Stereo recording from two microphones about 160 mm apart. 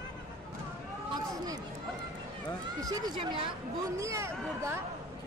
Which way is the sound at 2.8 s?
25° right (ahead or behind).